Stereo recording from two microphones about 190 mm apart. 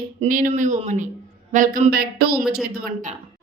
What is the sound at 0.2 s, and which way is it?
A woman's voice, 45° right (ahead or behind).